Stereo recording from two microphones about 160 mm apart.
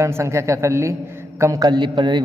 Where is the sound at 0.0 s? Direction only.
15° right (ahead or behind).